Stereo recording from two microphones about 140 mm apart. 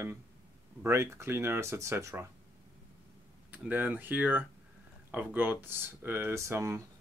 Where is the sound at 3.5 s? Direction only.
15° right (ahead or behind).